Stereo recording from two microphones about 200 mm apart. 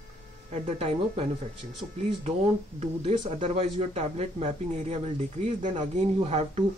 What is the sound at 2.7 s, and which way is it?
Speech, 30° right (ahead or behind).